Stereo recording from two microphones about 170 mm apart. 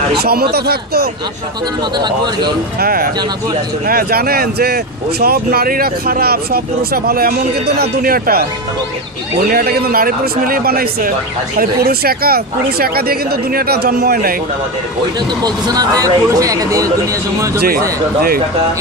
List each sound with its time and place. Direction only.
0.2 s speech: 65° right (ahead or behind)
2.0 s speech: 25° right (ahead or behind)
2.8 s speech: 60° right (ahead or behind)
15.1 s speech: 25° right (ahead or behind)
17.6 s speech: 60° right (ahead or behind)